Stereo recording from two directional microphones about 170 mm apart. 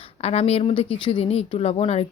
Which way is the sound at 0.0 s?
35° left (ahead or behind).